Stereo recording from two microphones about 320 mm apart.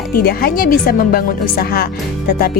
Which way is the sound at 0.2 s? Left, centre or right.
Left.